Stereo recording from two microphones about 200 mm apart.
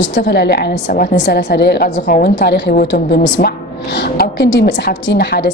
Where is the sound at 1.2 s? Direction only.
55° left (ahead or behind).